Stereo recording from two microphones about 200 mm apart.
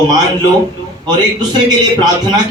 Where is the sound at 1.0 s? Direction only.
20° right (ahead or behind).